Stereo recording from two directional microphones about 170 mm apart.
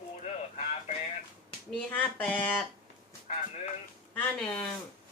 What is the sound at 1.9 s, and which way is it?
Speech, 10° left (ahead or behind).